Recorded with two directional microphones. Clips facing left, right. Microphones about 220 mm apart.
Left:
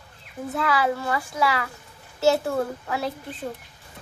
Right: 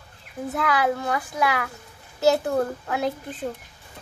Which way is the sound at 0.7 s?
20° right (ahead or behind).